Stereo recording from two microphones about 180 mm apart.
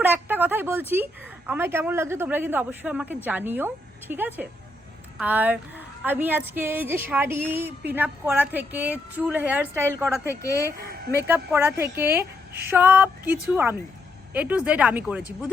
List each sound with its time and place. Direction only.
0.0 s a woman's voice: 10° right (ahead or behind)
10.4 s speech: 15° left (ahead or behind)
11.3 s a woman's voice: 10° right (ahead or behind)